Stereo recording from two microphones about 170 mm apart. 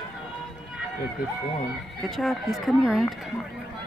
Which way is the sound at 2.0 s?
Centre (ahead or behind).